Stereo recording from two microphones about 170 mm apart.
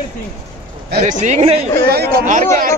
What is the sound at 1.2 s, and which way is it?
Speech, 40° right (ahead or behind).